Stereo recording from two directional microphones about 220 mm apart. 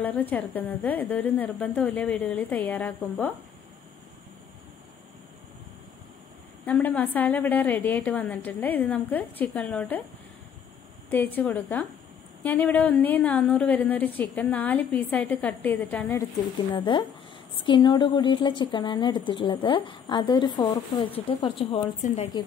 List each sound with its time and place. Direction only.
0.0 s a woman's voice: 5° left (ahead or behind)
6.6 s a woman's voice: 5° left (ahead or behind)
11.1 s a woman's voice: 10° left (ahead or behind)
16.7 s speech: 20° left (ahead or behind)